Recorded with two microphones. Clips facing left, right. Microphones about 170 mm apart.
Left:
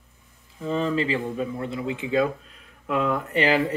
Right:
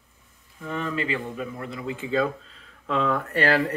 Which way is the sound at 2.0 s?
15° left (ahead or behind).